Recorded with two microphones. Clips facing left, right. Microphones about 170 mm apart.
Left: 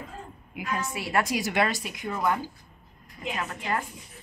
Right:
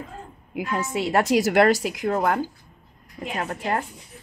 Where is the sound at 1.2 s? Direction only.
70° right (ahead or behind).